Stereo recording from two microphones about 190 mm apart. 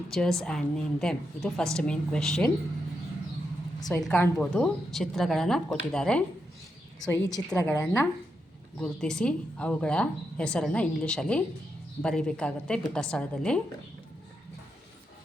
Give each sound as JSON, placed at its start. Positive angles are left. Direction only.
{"t": 0.1, "sound": "a woman's voice", "side_deg": 0}
{"t": 4.0, "sound": "a woman's voice", "side_deg": 5}
{"t": 7.1, "sound": "a woman's voice", "side_deg": 20}
{"t": 8.8, "sound": "a woman's voice", "side_deg": 5}